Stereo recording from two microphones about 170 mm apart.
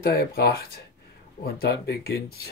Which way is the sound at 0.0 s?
65° left (ahead or behind).